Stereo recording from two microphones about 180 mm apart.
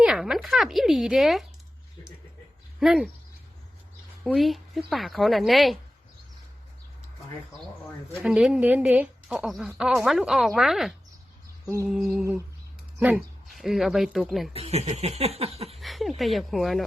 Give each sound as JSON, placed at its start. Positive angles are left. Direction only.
{"t": 0.0, "sound": "speech", "side_deg": 0}
{"t": 2.8, "sound": "speech", "side_deg": 0}
{"t": 4.2, "sound": "speech", "side_deg": 0}
{"t": 8.2, "sound": "speech", "side_deg": -5}
{"t": 14.5, "sound": "speech", "side_deg": -35}
{"t": 15.8, "sound": "speech", "side_deg": 0}